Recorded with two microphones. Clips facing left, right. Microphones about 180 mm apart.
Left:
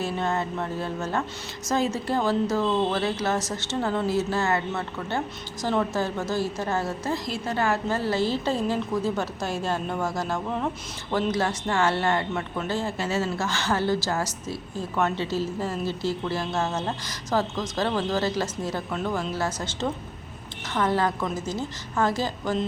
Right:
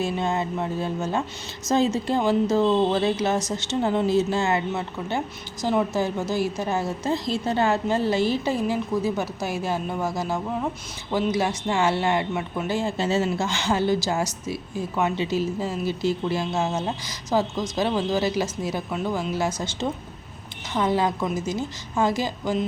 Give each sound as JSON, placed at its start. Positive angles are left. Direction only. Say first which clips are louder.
{"t": 0.0, "sound": "a woman's voice", "louder": "right 2 dB", "side_deg": -15}
{"t": 7.1, "sound": "a woman's voice", "louder": "right 4 dB", "side_deg": -25}